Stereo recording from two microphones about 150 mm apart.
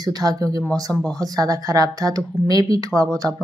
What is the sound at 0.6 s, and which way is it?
Speech, centre (ahead or behind).